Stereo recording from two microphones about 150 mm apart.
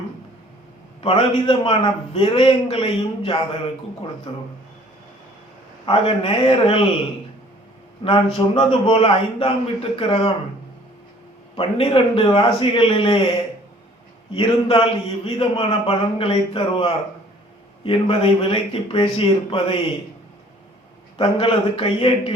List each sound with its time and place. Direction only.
1.0 s a man's voice: 35° left (ahead or behind)
5.8 s a man's voice: 35° left (ahead or behind)
8.0 s a man's voice: 35° left (ahead or behind)
11.5 s a man's voice: 35° left (ahead or behind)
14.3 s a man's voice: 35° left (ahead or behind)
21.2 s a man's voice: 40° left (ahead or behind)